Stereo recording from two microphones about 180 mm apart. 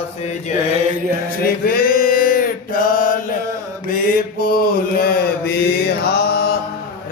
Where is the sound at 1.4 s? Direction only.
55° left (ahead or behind).